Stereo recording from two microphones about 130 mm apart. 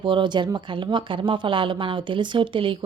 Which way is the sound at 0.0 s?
40° right (ahead or behind).